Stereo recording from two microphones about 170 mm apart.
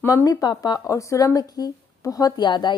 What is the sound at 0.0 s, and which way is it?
A woman's voice, 20° left (ahead or behind).